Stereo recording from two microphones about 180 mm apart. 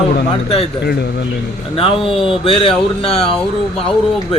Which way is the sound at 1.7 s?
30° left (ahead or behind).